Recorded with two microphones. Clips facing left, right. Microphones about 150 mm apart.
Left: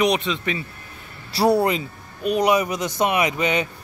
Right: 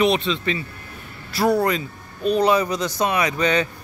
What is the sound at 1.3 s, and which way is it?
Speech, 35° left (ahead or behind).